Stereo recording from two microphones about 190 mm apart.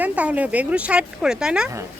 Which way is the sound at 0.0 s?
10° right (ahead or behind).